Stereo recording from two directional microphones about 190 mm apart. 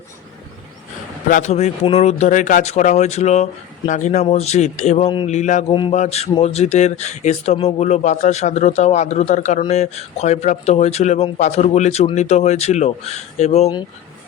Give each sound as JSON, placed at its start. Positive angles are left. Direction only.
{"t": 1.3, "sound": "speech", "side_deg": 35}